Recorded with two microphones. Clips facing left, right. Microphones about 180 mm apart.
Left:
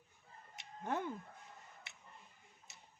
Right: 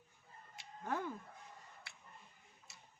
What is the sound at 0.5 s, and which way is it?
Chicken, 20° left (ahead or behind).